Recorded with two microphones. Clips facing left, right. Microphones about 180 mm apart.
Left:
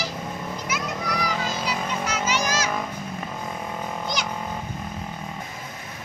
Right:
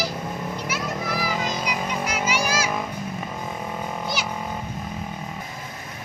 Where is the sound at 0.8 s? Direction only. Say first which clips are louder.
Even; 5° right (ahead or behind).